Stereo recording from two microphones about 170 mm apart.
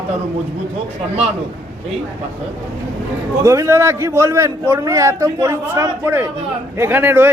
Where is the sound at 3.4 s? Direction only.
15° right (ahead or behind).